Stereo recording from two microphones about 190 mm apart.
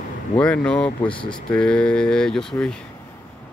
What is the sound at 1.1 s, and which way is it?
Speech, 25° left (ahead or behind).